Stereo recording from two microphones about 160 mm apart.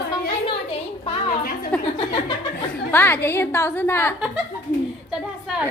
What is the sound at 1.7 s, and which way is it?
Speech, 5° left (ahead or behind).